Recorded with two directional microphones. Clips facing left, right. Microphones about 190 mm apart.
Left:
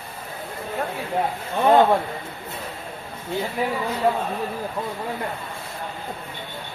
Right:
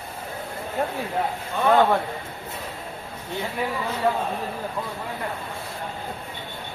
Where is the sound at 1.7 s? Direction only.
20° left (ahead or behind).